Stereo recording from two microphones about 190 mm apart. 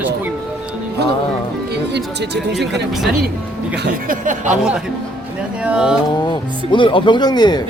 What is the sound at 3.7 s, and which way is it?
Speech, 60° right (ahead or behind).